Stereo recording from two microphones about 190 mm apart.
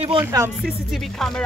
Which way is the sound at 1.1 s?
Centre (ahead or behind).